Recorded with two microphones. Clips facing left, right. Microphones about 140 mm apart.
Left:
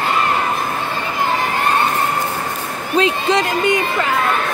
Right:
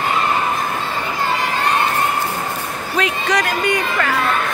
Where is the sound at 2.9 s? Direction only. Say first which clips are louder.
Left 4 dB; 25° left (ahead or behind).